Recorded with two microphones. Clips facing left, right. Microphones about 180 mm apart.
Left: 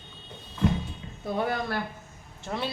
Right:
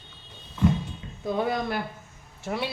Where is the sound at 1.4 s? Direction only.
15° right (ahead or behind).